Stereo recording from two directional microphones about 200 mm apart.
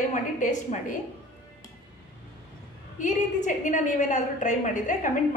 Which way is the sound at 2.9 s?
40° left (ahead or behind).